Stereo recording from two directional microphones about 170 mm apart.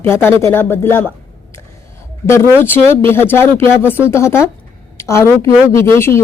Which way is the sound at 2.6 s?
15° left (ahead or behind).